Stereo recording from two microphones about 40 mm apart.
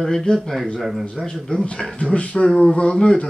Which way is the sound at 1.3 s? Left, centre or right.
Left.